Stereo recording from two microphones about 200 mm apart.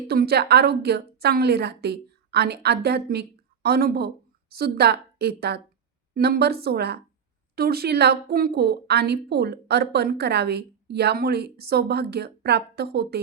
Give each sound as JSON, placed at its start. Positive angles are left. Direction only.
{"t": 0.1, "sound": "a woman's voice", "side_deg": -50}